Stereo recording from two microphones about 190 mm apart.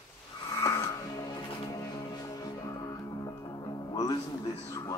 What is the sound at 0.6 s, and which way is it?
Music, 15° left (ahead or behind).